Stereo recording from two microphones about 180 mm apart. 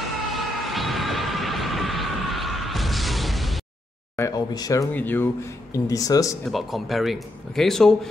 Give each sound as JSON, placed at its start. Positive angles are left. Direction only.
{"t": 0.3, "sound": "a sound", "side_deg": 0}
{"t": 4.2, "sound": "speech", "side_deg": 20}
{"t": 6.4, "sound": "speech", "side_deg": 0}